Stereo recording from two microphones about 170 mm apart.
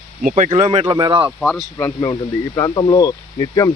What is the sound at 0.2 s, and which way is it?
Speech, 50° right (ahead or behind).